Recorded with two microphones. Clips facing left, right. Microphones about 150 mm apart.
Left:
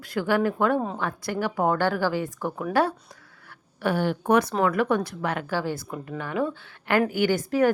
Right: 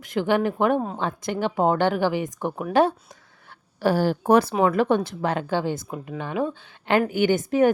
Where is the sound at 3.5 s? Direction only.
35° right (ahead or behind).